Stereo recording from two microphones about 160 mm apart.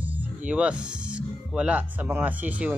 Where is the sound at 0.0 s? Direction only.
10° right (ahead or behind).